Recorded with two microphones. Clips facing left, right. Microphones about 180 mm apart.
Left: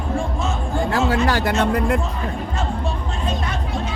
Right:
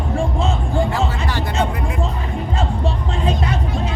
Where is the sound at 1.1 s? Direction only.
90° left.